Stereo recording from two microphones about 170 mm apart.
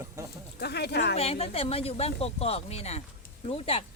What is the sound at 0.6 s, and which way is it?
Speech, 75° left (ahead or behind).